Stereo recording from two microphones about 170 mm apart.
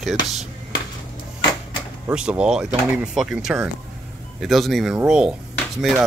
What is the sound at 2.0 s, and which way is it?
Speech, 5° right (ahead or behind).